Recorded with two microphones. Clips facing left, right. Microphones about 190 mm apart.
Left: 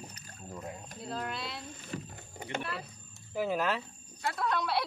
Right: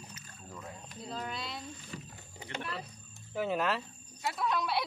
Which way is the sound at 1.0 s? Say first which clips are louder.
Left 2 dB; centre (ahead or behind).